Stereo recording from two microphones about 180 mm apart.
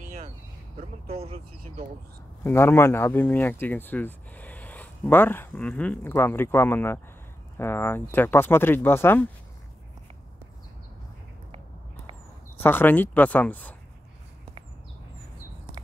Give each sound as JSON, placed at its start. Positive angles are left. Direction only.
{"t": 0.7, "sound": "speech", "side_deg": -35}
{"t": 2.4, "sound": "speech", "side_deg": 15}
{"t": 12.6, "sound": "speech", "side_deg": 10}